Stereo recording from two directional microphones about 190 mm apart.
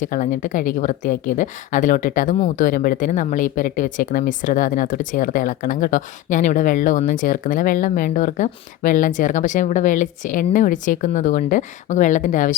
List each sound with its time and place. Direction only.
0.0 s speech: 45° left (ahead or behind)